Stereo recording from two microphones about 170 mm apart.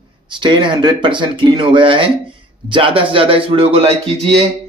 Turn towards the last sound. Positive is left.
turn(degrees=-40)  # may be behind; listen again after turning